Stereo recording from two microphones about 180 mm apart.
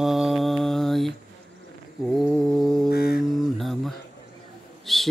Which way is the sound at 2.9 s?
60° left (ahead or behind).